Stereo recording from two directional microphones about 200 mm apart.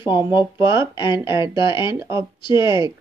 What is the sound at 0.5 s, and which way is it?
Speech, 15° right (ahead or behind).